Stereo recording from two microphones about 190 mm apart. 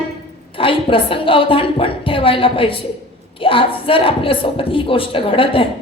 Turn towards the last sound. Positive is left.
turn(degrees=30)  # may be behind; listen again after turning